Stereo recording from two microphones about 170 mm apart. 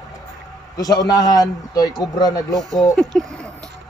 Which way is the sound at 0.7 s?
20° left (ahead or behind).